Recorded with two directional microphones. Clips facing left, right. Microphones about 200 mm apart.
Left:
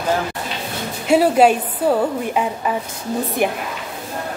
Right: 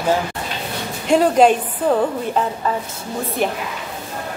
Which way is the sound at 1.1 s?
5° left (ahead or behind).